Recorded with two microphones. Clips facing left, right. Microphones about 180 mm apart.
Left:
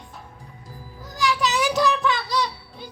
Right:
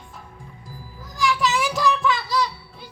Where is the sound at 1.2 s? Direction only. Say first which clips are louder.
Right 1 dB; centre (ahead or behind).